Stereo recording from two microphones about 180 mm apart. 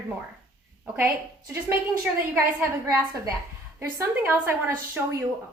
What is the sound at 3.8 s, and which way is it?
A woman's voice, 15° right (ahead or behind).